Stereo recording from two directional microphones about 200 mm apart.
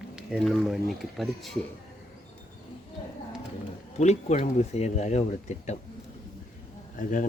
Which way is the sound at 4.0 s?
35° left (ahead or behind).